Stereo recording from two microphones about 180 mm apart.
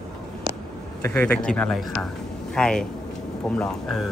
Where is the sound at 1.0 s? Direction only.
10° left (ahead or behind).